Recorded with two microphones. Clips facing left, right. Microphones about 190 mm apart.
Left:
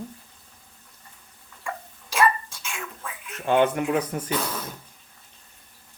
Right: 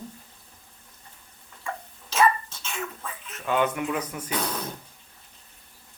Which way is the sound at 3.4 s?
30° left (ahead or behind).